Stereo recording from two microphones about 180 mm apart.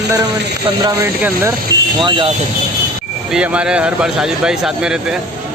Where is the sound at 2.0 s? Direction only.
25° right (ahead or behind).